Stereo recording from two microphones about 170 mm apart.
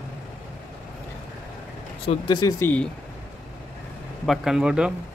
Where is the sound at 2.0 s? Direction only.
30° left (ahead or behind).